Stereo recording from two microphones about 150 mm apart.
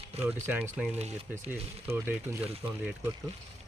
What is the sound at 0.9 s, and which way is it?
Speech, 45° right (ahead or behind).